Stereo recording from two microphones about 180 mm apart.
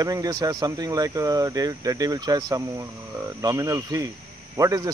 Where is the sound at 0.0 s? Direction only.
20° right (ahead or behind).